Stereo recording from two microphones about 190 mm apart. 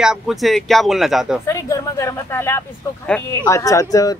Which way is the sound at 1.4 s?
15° left (ahead or behind).